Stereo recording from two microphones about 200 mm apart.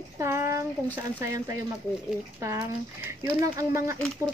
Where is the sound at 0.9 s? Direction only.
10° right (ahead or behind).